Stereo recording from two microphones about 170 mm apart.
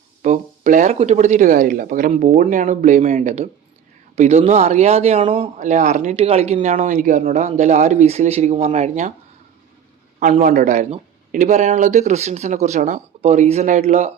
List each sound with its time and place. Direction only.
0.2 s a man's voice: 45° right (ahead or behind)
10.4 s a man's voice: 50° right (ahead or behind)